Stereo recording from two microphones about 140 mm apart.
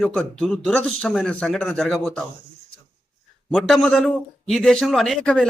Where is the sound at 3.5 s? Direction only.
5° left (ahead or behind).